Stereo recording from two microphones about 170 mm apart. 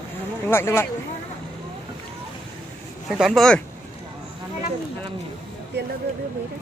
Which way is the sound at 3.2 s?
Centre (ahead or behind).